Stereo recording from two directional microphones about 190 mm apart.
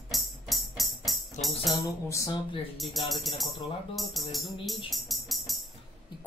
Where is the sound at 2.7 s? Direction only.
Centre (ahead or behind).